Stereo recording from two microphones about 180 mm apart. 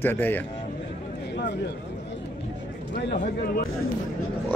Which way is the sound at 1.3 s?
70° left (ahead or behind).